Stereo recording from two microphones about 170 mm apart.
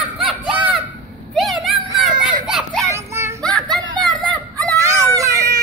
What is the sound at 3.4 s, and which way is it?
Music, 5° left (ahead or behind).